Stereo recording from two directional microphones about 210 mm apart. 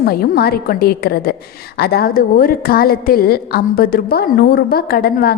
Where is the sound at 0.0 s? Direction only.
45° left (ahead or behind).